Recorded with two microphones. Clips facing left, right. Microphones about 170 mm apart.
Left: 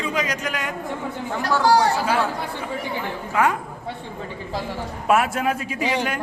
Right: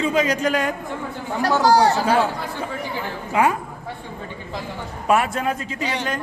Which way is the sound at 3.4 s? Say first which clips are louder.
Right 2 dB; 15° right (ahead or behind).